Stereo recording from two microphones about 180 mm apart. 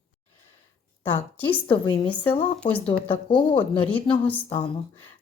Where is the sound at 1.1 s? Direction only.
10° left (ahead or behind).